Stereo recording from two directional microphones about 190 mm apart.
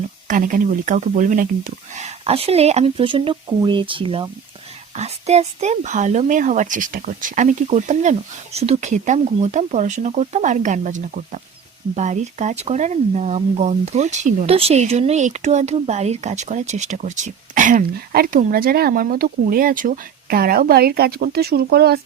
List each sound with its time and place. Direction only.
0.3 s speech: 45° right (ahead or behind)